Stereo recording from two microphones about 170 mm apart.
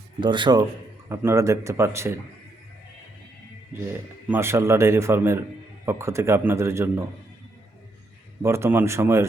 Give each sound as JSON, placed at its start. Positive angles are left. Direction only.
{"t": 0.2, "sound": "a man's voice", "side_deg": -25}
{"t": 1.0, "sound": "speech", "side_deg": -15}
{"t": 4.3, "sound": "speech", "side_deg": -15}
{"t": 8.4, "sound": "speech", "side_deg": -15}